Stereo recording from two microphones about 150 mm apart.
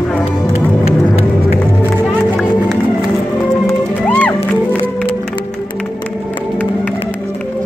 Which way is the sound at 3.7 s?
10° left (ahead or behind).